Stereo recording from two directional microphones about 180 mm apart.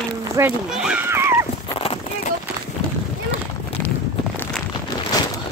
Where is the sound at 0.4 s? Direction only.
5° right (ahead or behind).